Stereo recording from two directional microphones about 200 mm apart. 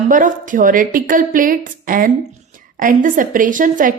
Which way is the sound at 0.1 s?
40° right (ahead or behind).